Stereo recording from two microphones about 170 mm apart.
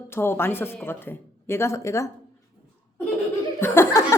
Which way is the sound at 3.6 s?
15° left (ahead or behind).